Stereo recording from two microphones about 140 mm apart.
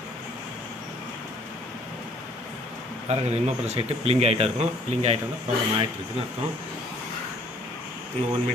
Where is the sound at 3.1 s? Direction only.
50° right (ahead or behind).